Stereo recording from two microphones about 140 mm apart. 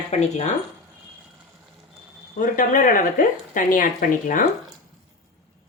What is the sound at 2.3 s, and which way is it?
Speech, 75° left (ahead or behind).